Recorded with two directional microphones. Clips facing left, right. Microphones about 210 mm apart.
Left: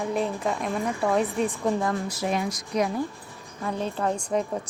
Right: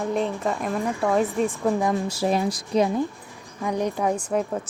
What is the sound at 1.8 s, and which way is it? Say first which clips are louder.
Speech: right 3 dB; 20° right (ahead or behind).